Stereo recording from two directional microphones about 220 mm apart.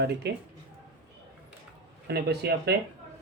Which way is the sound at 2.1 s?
45° right (ahead or behind).